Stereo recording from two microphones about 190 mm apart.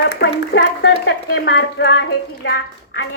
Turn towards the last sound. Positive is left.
turn(degrees=70)  # may be behind; listen again after turning